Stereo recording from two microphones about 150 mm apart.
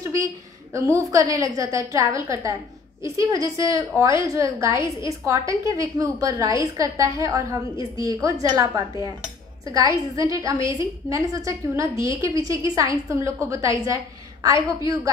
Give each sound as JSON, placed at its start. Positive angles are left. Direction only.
{"t": 0.7, "sound": "a woman's voice", "side_deg": -20}